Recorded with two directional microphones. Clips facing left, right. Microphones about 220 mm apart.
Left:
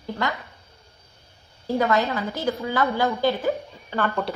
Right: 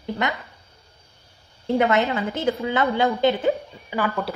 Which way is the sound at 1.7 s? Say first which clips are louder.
Right 2 dB; 25° right (ahead or behind).